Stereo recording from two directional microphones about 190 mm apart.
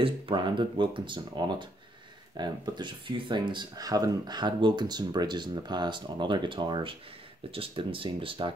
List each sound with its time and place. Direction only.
0.0 s speech: 25° right (ahead or behind)